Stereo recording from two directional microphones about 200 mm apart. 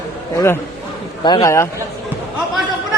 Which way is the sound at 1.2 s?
20° left (ahead or behind).